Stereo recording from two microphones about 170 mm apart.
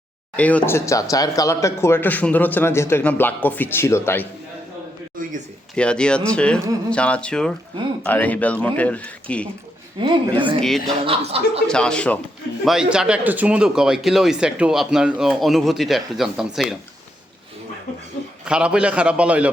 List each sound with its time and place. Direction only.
0.3 s speech: 10° left (ahead or behind)
5.7 s speech: 5° left (ahead or behind)
10.0 s a woman's voice: 30° right (ahead or behind)
10.6 s speech: centre (ahead or behind)
11.0 s a man's voice: 35° right (ahead or behind)
11.7 s speech: 5° left (ahead or behind)
18.4 s a man's voice: 5° right (ahead or behind)